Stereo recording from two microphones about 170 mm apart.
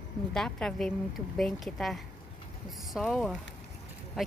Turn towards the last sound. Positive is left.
turn(degrees=0)  # may be behind; listen again after turning